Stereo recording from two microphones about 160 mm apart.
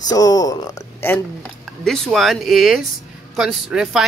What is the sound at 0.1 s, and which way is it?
Speech, 25° left (ahead or behind).